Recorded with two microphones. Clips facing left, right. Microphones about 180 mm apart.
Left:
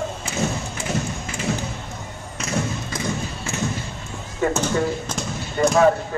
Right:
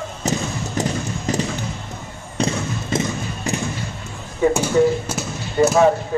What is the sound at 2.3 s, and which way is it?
Basketball bounce, 30° right (ahead or behind).